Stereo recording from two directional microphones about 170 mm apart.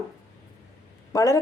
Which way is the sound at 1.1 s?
15° left (ahead or behind).